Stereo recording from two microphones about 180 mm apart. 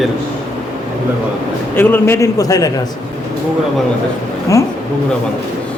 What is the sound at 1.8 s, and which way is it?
Speech, 10° left (ahead or behind).